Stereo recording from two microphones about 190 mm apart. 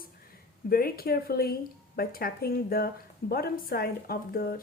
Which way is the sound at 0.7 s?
50° left (ahead or behind).